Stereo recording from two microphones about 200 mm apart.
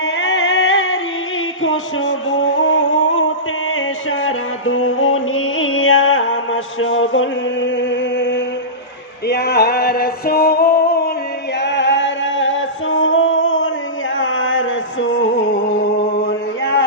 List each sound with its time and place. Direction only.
0.2 s music: 80° left
4.2 s music: 90° left; by 8.4 s 65° left (ahead or behind)
9.2 s music: 55° left (ahead or behind)
11.6 s music: 65° left (ahead or behind)
14.2 s a sound: 75° left (ahead or behind)